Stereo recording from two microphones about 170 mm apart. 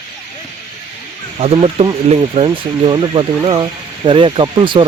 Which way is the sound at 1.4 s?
35° right (ahead or behind).